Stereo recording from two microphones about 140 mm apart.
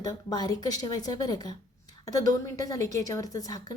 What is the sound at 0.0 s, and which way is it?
A woman's voice, 30° left (ahead or behind).